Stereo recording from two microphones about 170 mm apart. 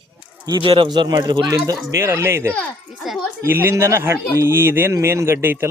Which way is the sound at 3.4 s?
15° right (ahead or behind).